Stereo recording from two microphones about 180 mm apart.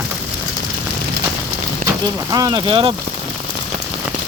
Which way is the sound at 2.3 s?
20° right (ahead or behind).